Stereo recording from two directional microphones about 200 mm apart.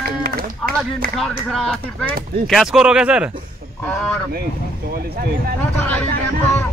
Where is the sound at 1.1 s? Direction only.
Centre (ahead or behind).